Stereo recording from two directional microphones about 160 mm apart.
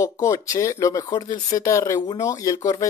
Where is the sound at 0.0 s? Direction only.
20° left (ahead or behind).